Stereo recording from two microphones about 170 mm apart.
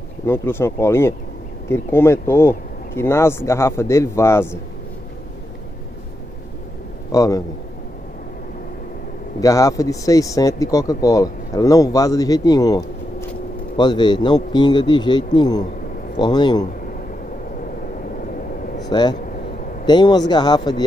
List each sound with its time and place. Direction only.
0.3 s speech: 15° left (ahead or behind)
7.1 s a man's voice: 20° left (ahead or behind)
9.4 s speech: 20° left (ahead or behind)
18.8 s vehicle: 25° left (ahead or behind)
19.9 s speech: 25° left (ahead or behind)